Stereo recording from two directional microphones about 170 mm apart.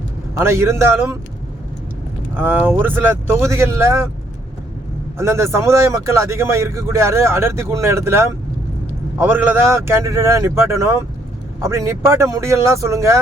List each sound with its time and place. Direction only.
0.3 s speech: 15° right (ahead or behind)
2.3 s speech: 10° right (ahead or behind)
5.1 s speech: 15° right (ahead or behind)